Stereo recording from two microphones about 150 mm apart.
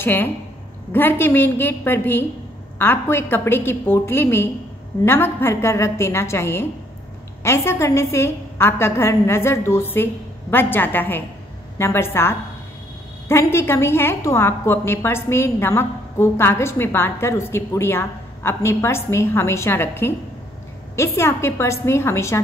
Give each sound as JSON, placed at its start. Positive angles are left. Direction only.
{"t": 0.0, "sound": "a woman's voice", "side_deg": 15}